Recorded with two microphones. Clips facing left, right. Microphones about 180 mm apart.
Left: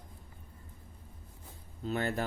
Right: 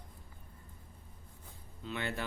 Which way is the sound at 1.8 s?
40° left (ahead or behind).